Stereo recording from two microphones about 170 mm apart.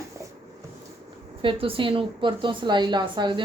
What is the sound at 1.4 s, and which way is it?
A woman's voice, 30° right (ahead or behind).